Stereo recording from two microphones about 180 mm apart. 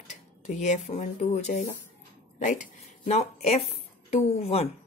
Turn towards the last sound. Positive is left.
turn(degrees=35)  # may be behind; listen again after turning